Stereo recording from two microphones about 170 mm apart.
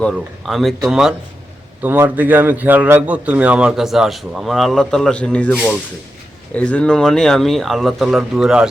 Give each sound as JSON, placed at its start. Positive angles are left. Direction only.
{"t": 0.0, "sound": "a man's voice", "side_deg": 0}